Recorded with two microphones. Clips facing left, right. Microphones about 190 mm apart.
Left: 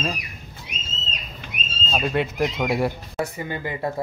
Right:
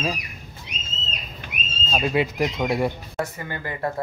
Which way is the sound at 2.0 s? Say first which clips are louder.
Right 1 dB; centre (ahead or behind).